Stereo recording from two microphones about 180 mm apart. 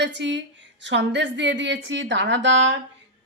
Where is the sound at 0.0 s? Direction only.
80° right.